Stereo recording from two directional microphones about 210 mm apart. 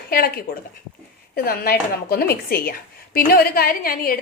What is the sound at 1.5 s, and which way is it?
A woman's voice, 45° left (ahead or behind).